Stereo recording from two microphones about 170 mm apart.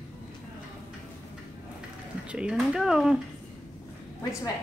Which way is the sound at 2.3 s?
5° right (ahead or behind).